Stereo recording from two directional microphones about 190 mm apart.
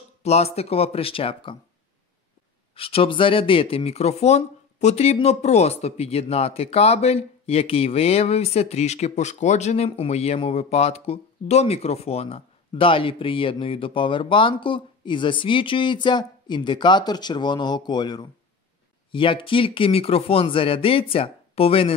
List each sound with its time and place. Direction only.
0.2 s speech: 35° left (ahead or behind)
2.7 s speech: 30° left (ahead or behind)